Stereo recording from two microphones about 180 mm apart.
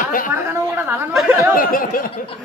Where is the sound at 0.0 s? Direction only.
50° left (ahead or behind).